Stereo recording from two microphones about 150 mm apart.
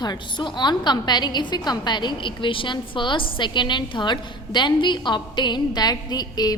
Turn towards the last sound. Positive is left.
turn(degrees=25)  # may be behind; listen again after turning